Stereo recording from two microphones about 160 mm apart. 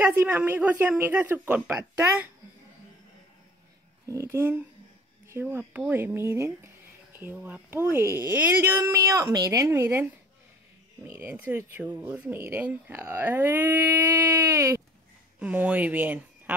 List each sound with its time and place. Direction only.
0.0 s speech: 10° right (ahead or behind)
4.0 s speech: 20° right (ahead or behind)
11.1 s a woman's voice: 15° right (ahead or behind)